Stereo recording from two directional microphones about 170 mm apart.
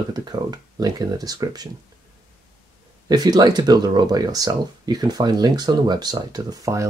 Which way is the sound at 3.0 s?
25° right (ahead or behind).